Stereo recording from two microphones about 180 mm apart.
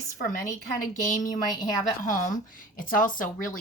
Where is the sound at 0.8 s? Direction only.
45° left (ahead or behind).